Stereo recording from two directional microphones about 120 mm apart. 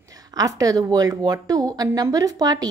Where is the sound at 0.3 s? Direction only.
30° right (ahead or behind).